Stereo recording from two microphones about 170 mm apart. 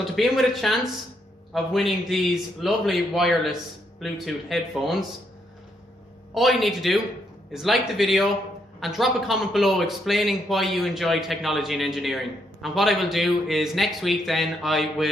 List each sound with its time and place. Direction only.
0.0 s a man's voice: centre (ahead or behind)
6.3 s a man's voice: centre (ahead or behind)